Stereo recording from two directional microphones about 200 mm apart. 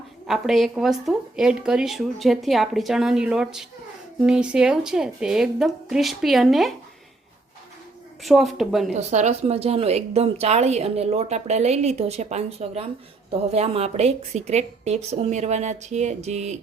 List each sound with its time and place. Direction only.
0.3 s speech: centre (ahead or behind)
8.2 s speech: centre (ahead or behind)
8.9 s speech: 35° right (ahead or behind)